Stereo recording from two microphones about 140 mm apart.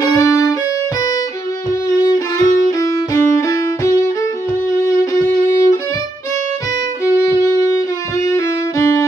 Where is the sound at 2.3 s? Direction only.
25° left (ahead or behind).